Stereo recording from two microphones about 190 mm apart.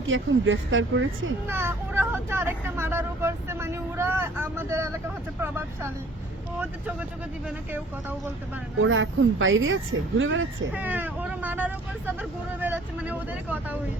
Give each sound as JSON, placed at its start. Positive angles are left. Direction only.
{"t": 0.0, "sound": "speech", "side_deg": -90}
{"t": 1.5, "sound": "speech", "side_deg": -10}
{"t": 8.8, "sound": "speech", "side_deg": -90}
{"t": 10.7, "sound": "speech", "side_deg": -10}